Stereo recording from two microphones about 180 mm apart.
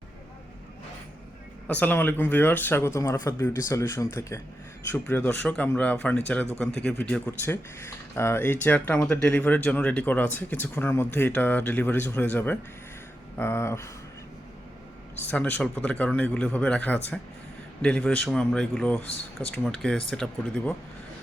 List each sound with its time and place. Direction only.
1.6 s speech: 10° left (ahead or behind)
15.3 s a man's voice: 10° left (ahead or behind)